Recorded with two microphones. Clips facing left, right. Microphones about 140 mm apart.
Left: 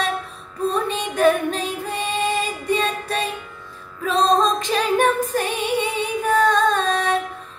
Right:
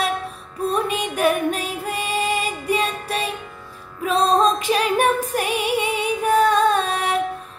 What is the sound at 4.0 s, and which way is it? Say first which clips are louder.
Music: even; 10° right (ahead or behind).